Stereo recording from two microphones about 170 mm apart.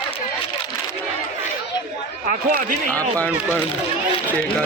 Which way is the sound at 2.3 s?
50° right (ahead or behind).